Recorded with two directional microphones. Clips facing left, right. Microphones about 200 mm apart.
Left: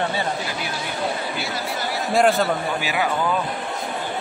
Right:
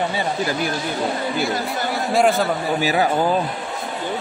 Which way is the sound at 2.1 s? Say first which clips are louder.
Even; centre (ahead or behind).